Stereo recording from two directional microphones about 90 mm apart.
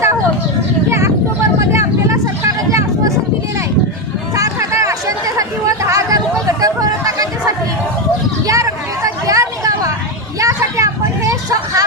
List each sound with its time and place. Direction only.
0.9 s vehicle: 30° right (ahead or behind)
4.4 s chatter: 35° right (ahead or behind)
8.4 s a sound: 35° right (ahead or behind)
10.4 s vehicle: 35° right (ahead or behind)